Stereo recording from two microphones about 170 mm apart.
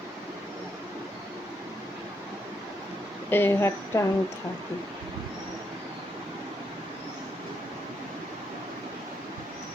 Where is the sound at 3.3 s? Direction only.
10° left (ahead or behind).